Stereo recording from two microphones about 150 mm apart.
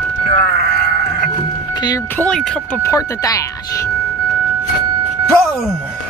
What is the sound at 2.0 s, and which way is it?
Speech, 10° left (ahead or behind).